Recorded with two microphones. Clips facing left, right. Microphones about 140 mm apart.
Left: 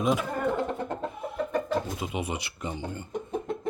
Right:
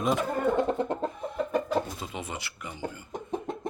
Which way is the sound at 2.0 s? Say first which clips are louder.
Left 5 dB; 15° left (ahead or behind).